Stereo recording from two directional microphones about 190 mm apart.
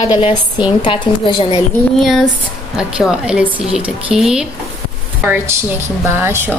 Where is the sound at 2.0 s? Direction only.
Centre (ahead or behind).